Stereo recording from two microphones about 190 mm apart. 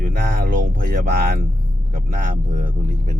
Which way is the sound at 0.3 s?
50° right (ahead or behind).